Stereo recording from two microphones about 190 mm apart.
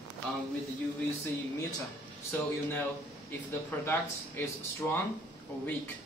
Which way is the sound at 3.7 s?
10° left (ahead or behind).